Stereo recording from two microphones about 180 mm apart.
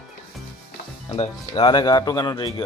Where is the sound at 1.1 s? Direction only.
30° left (ahead or behind).